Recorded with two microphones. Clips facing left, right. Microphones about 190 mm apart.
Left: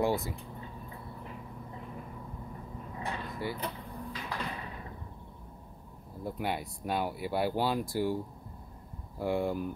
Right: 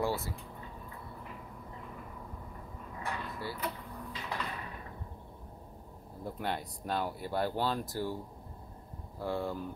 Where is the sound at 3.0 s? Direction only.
20° left (ahead or behind).